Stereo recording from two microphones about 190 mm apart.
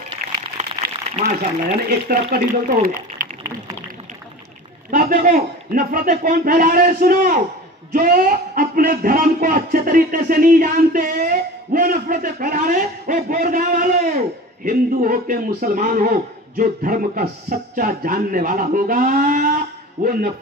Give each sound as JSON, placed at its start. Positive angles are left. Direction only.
{"t": 0.6, "sound": "a sound", "side_deg": -35}
{"t": 1.9, "sound": "a man's voice", "side_deg": -50}
{"t": 4.9, "sound": "a man's voice", "side_deg": -45}